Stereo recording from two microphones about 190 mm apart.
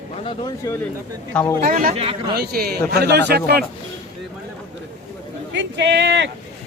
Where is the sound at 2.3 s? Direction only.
55° right (ahead or behind).